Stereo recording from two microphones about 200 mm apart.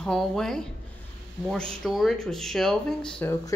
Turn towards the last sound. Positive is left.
turn(degrees=10)  # may be behind; listen again after turning